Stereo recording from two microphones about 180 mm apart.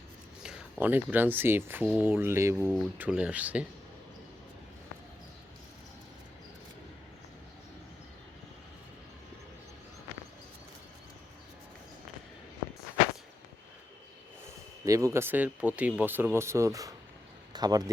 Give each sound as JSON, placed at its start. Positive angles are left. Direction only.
{"t": 0.4, "sound": "speech", "side_deg": -5}
{"t": 14.8, "sound": "speech", "side_deg": -20}